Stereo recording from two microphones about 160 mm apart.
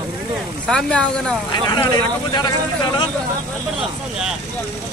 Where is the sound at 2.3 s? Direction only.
25° left (ahead or behind).